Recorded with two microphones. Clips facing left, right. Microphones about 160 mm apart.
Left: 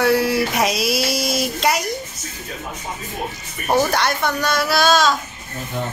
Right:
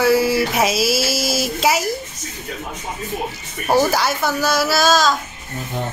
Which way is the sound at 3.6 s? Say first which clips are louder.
Right 1 dB; 5° right (ahead or behind).